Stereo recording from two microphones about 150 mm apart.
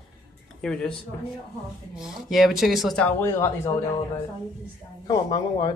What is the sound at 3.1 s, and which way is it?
Speech, 20° left (ahead or behind).